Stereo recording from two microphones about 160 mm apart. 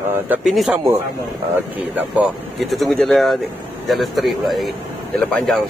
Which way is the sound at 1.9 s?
5° right (ahead or behind).